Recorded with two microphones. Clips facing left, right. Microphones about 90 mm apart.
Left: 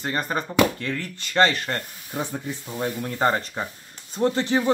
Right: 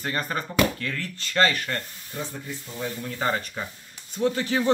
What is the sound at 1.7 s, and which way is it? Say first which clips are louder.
Speech: left 3 dB; 55° left (ahead or behind).